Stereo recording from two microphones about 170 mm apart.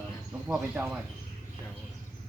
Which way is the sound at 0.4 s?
10° right (ahead or behind).